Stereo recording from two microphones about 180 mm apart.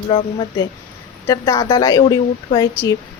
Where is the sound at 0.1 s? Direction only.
30° left (ahead or behind).